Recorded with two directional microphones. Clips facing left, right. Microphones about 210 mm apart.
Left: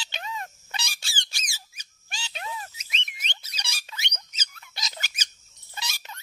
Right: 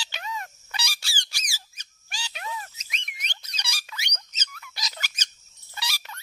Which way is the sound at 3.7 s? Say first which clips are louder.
Right 2 dB; 25° left (ahead or behind).